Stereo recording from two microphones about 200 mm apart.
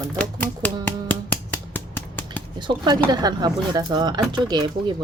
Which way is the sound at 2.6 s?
20° right (ahead or behind).